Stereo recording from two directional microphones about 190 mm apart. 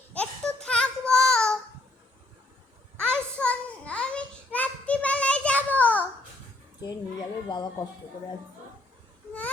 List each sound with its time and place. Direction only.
0.1 s a sound: 5° left (ahead or behind)
3.1 s child singing: 5° left (ahead or behind)
6.8 s children playing: 20° left (ahead or behind)